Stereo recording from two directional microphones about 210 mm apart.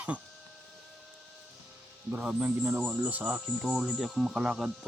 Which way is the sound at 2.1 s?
5° right (ahead or behind).